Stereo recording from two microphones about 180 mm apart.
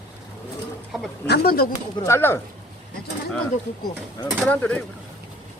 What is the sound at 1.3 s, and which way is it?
Speech, 60° left (ahead or behind).